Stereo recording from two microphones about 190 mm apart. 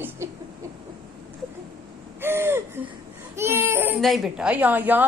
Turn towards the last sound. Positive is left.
turn(degrees=-10)  # may be behind; listen again after turning